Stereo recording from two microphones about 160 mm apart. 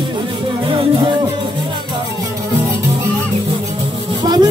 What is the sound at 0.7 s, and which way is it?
Music, 35° right (ahead or behind).